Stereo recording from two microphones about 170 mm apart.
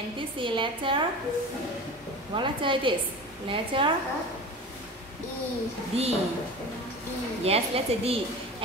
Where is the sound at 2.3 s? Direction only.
30° right (ahead or behind).